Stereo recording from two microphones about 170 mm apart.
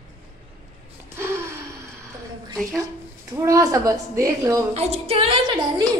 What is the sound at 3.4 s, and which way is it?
A woman's voice, 20° right (ahead or behind).